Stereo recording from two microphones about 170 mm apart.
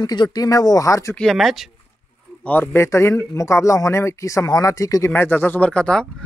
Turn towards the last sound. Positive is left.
turn(degrees=5)  # may be behind; listen again after turning